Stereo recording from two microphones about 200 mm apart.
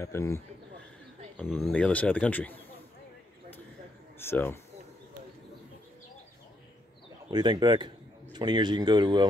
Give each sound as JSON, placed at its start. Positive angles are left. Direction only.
{"t": 0.0, "sound": "speech", "side_deg": 15}
{"t": 4.2, "sound": "speech", "side_deg": 10}
{"t": 7.2, "sound": "a man's voice", "side_deg": -20}